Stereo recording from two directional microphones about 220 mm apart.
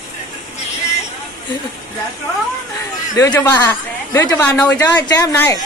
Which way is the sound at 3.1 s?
15° left (ahead or behind).